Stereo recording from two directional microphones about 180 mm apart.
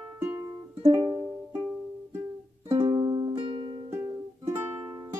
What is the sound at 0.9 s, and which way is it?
Music, 25° right (ahead or behind).